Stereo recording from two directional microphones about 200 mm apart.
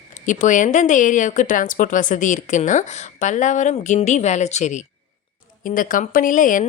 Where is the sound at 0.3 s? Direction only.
40° left (ahead or behind).